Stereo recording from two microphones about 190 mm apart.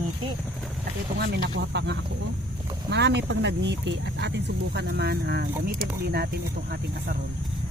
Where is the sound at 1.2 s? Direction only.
60° right (ahead or behind).